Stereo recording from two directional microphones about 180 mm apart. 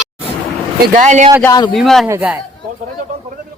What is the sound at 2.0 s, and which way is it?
Speech, 10° right (ahead or behind).